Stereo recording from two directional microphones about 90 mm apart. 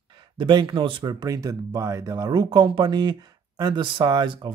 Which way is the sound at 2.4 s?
65° right (ahead or behind).